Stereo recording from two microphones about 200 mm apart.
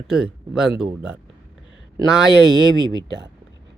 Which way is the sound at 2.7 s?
20° right (ahead or behind).